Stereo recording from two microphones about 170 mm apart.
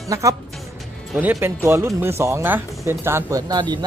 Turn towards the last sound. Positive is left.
turn(degrees=-25)  # may be behind; listen again after turning